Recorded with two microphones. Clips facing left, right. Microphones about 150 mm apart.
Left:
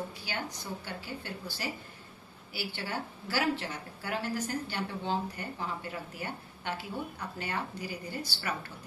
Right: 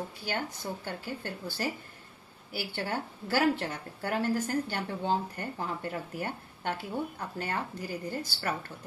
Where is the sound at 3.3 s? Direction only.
50° right (ahead or behind).